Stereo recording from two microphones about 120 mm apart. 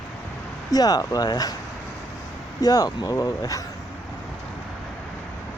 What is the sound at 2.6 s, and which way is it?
Speech, 30° left (ahead or behind).